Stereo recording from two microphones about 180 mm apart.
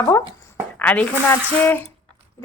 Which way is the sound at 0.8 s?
10° left (ahead or behind).